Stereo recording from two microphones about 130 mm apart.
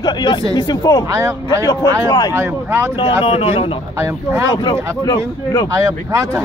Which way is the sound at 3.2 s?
50° left (ahead or behind).